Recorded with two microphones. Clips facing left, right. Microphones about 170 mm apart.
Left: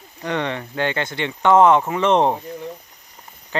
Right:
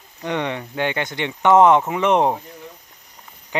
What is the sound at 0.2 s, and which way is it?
Speech, 15° right (ahead or behind).